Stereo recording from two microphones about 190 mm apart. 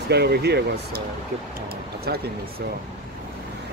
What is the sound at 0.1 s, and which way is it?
Speech, 60° right (ahead or behind).